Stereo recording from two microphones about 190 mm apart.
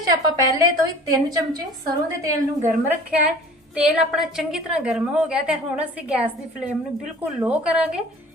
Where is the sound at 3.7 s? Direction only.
Centre (ahead or behind).